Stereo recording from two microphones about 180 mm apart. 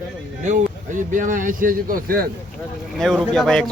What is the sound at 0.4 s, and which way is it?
Speech, 45° right (ahead or behind).